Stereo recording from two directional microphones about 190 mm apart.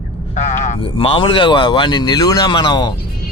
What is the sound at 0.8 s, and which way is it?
Speech, 30° left (ahead or behind).